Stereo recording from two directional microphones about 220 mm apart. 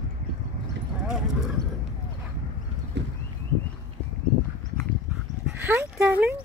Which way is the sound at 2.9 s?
50° right (ahead or behind).